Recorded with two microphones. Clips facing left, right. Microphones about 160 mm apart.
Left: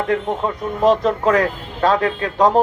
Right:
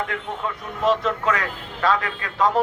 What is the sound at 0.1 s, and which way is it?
Speech, 40° left (ahead or behind).